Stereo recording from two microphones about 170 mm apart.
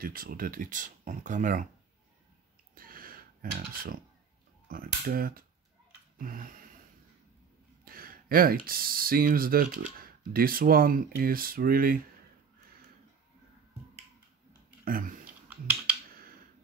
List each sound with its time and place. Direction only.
0.0 s speech: 60° right (ahead or behind)
2.7 s a sound: 55° right (ahead or behind)
4.6 s speech: 60° right (ahead or behind)
6.1 s a sound: 55° right (ahead or behind)
7.8 s speech: 60° right (ahead or behind)
14.9 s speech: 55° right (ahead or behind)
15.5 s computer keyboard: 10° right (ahead or behind)